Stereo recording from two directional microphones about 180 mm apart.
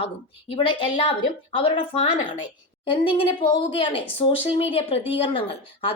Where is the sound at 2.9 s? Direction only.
30° left (ahead or behind).